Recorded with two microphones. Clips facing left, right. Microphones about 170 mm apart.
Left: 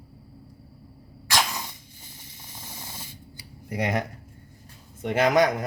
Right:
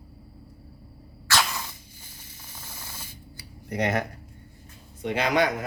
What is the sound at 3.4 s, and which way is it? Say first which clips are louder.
Cutlery: right 1 dB; 10° left (ahead or behind).